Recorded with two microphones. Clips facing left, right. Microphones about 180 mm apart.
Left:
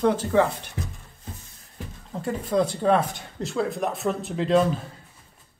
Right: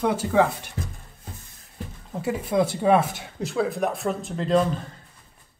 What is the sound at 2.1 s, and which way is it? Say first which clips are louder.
Speech: right 1 dB; 10° right (ahead or behind).